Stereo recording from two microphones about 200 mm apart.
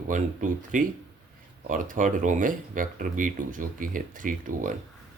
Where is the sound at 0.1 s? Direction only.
40° right (ahead or behind).